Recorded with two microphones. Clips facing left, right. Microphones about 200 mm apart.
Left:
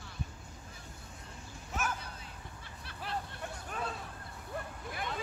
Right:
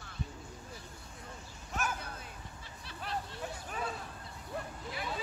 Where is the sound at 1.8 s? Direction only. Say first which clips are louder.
Even; centre (ahead or behind).